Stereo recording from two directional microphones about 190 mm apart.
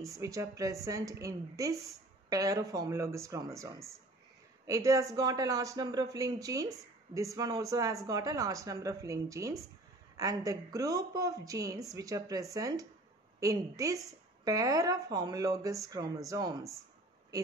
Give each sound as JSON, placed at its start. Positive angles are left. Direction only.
{"t": 0.0, "sound": "speech", "side_deg": -15}